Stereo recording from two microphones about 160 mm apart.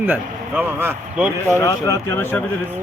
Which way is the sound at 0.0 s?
10° right (ahead or behind).